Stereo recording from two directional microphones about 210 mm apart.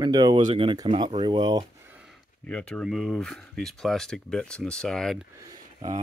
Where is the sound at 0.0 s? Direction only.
20° right (ahead or behind).